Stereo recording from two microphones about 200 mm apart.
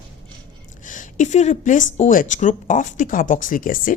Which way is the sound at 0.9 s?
40° left (ahead or behind).